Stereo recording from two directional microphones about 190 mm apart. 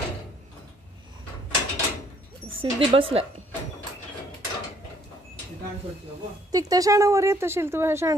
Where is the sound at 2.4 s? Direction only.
30° right (ahead or behind).